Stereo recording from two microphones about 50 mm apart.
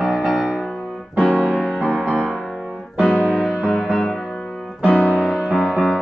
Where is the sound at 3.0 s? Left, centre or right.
Left.